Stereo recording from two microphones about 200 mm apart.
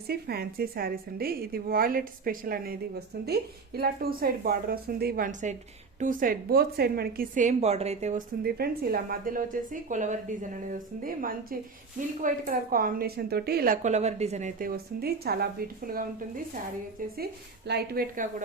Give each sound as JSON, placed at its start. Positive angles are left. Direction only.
{"t": 0.1, "sound": "a woman's voice", "side_deg": -50}
{"t": 8.4, "sound": "a woman's voice", "side_deg": -50}
{"t": 13.8, "sound": "a woman's voice", "side_deg": -35}